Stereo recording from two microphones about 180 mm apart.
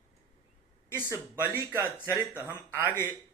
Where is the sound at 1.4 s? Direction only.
10° right (ahead or behind).